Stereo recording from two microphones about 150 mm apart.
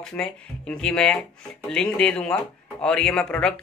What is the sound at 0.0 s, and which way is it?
A man's voice, 5° left (ahead or behind).